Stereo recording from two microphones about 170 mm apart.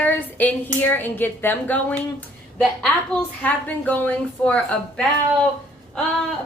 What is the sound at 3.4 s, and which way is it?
A woman's voice, 10° left (ahead or behind).